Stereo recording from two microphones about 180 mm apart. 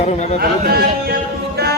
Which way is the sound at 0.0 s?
40° left (ahead or behind).